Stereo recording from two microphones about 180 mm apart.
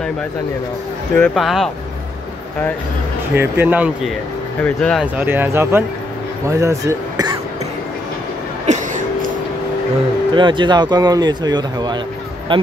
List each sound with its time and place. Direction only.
1.1 s speech: 5° left (ahead or behind)
3.3 s speech: 10° right (ahead or behind)
4.6 s speech: 5° left (ahead or behind)
5.1 s speech: 10° right (ahead or behind)
8.7 s a sound: 40° right (ahead or behind)
10.3 s speech: 25° right (ahead or behind)